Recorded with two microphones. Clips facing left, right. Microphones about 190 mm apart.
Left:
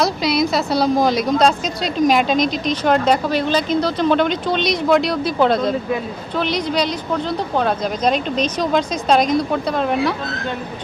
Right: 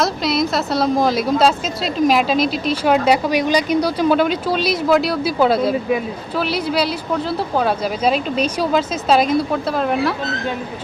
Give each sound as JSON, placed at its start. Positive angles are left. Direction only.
{"t": 0.0, "sound": "a woman's voice", "side_deg": 0}